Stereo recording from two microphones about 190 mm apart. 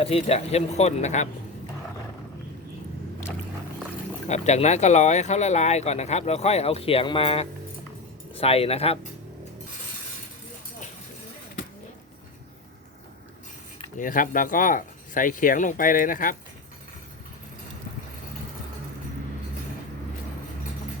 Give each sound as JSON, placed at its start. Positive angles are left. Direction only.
{"t": 0.0, "sound": "speech", "side_deg": 30}
{"t": 4.3, "sound": "speech", "side_deg": 35}
{"t": 14.0, "sound": "speech", "side_deg": 45}